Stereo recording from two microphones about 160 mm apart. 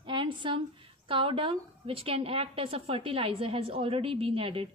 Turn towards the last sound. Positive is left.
turn(degrees=-35)  # may be behind; listen again after turning